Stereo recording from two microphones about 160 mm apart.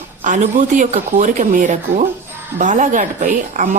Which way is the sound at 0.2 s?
50° right (ahead or behind).